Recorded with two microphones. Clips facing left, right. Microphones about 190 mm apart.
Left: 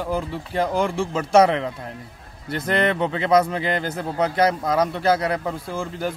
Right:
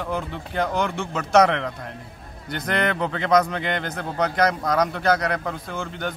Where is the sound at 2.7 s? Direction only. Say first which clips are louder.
Left 3 dB; centre (ahead or behind).